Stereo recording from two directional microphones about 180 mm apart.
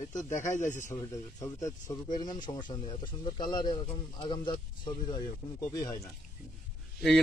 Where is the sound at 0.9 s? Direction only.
15° left (ahead or behind).